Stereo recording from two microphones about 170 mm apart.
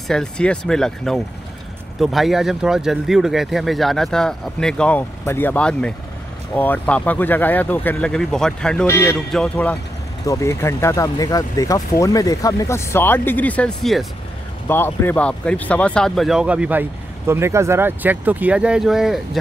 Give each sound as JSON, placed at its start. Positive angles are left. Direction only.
{"t": 0.1, "sound": "speech", "side_deg": 5}
{"t": 8.8, "sound": "speech", "side_deg": 15}
{"t": 10.2, "sound": "speech", "side_deg": 20}